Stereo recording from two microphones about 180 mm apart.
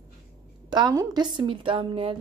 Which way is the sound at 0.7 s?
25° right (ahead or behind).